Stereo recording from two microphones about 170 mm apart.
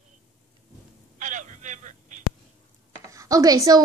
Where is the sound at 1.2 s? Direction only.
45° right (ahead or behind).